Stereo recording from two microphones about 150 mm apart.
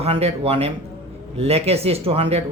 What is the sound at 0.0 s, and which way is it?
Speech, 40° right (ahead or behind).